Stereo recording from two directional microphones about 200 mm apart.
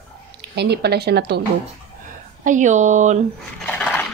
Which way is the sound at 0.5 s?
55° right (ahead or behind).